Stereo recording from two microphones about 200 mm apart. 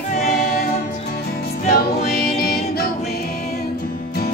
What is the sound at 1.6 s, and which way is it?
Music, 50° left (ahead or behind).